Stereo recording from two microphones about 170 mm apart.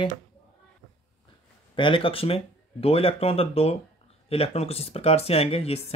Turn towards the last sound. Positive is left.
turn(degrees=35)  # may be behind; listen again after turning